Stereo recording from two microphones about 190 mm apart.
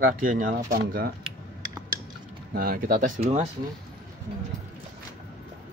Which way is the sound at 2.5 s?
50° right (ahead or behind).